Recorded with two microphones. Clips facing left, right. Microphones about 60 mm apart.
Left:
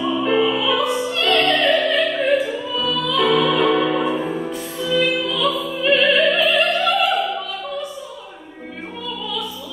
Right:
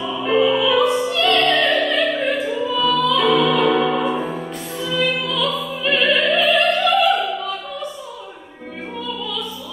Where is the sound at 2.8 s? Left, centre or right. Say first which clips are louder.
Right 2 dB; centre.